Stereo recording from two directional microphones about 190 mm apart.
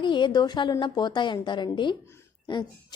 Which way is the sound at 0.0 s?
25° left (ahead or behind).